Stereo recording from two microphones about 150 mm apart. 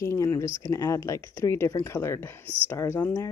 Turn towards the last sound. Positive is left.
turn(degrees=15)  # may be behind; listen again after turning